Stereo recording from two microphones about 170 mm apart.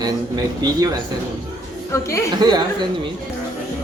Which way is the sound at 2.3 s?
25° right (ahead or behind).